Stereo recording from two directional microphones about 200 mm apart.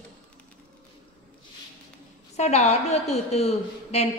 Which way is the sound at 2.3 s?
35° left (ahead or behind).